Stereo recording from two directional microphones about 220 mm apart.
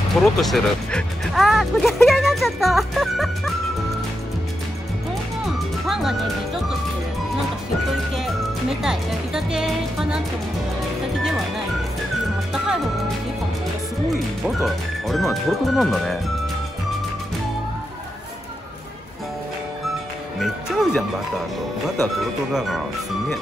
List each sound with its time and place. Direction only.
0.2 s speech: centre (ahead or behind)
5.4 s music: centre (ahead or behind)
8.8 s speech: 5° right (ahead or behind)
14.6 s speech: centre (ahead or behind)
20.3 s speech: centre (ahead or behind)
22.5 s speech: centre (ahead or behind)